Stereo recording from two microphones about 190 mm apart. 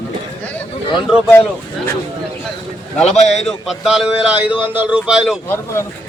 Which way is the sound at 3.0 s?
35° left (ahead or behind).